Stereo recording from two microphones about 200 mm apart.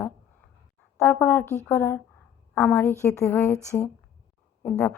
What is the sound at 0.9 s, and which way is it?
A woman's voice, 10° left (ahead or behind).